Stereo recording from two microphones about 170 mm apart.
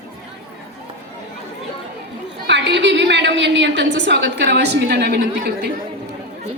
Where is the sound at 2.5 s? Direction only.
90° right; by 5.2 s 70° right (ahead or behind).